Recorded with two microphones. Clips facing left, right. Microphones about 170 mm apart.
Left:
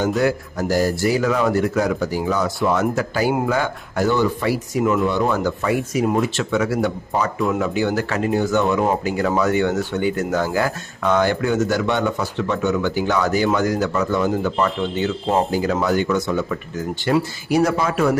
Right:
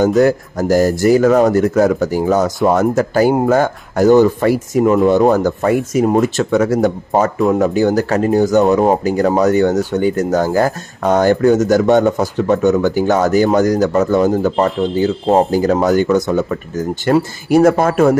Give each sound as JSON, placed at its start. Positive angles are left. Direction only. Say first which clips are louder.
{"t": 0.0, "sound": "a man's voice", "louder": "right 7 dB", "side_deg": -45}